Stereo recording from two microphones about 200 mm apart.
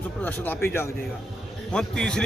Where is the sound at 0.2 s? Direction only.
10° left (ahead or behind).